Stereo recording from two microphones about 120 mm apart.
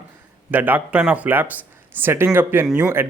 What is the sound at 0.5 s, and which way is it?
A man's voice, 15° right (ahead or behind).